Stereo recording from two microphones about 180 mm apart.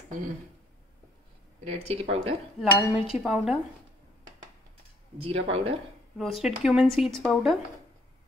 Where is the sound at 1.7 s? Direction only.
35° right (ahead or behind).